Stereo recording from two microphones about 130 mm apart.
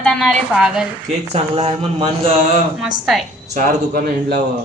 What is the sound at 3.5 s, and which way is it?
Speech, 90° right.